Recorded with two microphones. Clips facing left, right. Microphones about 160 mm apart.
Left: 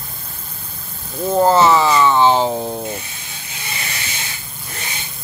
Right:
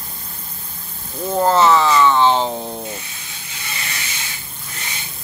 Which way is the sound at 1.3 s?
5° left (ahead or behind).